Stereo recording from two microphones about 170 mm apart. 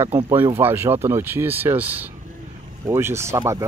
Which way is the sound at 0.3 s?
10° right (ahead or behind).